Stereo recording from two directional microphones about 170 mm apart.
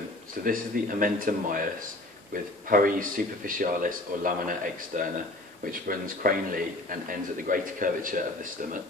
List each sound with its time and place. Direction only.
0.4 s a man's voice: 55° right (ahead or behind)